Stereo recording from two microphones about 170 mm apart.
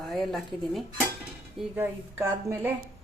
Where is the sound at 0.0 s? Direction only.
Centre (ahead or behind).